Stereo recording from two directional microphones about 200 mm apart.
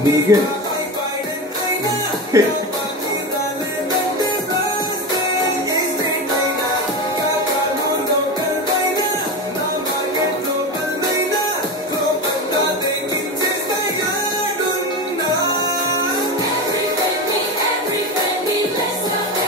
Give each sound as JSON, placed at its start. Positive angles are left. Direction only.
{"t": 0.3, "sound": "music", "side_deg": -15}
{"t": 2.3, "sound": "music", "side_deg": -15}